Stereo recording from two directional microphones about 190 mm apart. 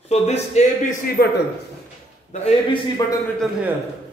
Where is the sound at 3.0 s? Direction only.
20° left (ahead or behind).